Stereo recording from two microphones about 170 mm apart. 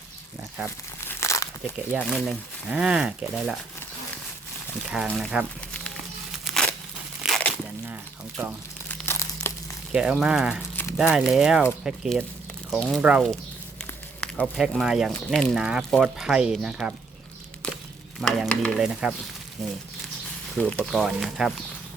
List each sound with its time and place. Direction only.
1.0 s crumpling: 15° left (ahead or behind)
2.2 s speech: 5° right (ahead or behind)
4.9 s speech: 5° right (ahead or behind)
6.4 s a sound: 5° left (ahead or behind)
7.2 s tearing: centre (ahead or behind)
8.9 s crumpling: 10° left (ahead or behind)
9.9 s speech: 5° right (ahead or behind)
17.6 s a sound: 5° left (ahead or behind)
18.2 s speech: centre (ahead or behind)